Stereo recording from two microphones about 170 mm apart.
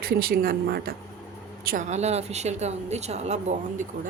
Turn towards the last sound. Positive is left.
turn(degrees=-40)  # may be behind; listen again after turning